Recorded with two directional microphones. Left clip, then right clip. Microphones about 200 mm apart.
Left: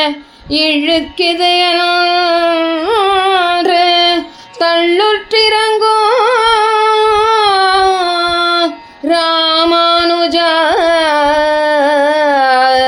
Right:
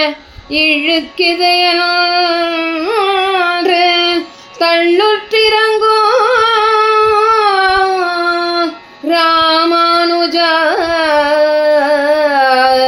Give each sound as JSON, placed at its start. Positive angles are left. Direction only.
{"t": 0.5, "sound": "female singing", "side_deg": 40}
{"t": 4.6, "sound": "singing", "side_deg": 40}
{"t": 9.0, "sound": "female singing", "side_deg": 40}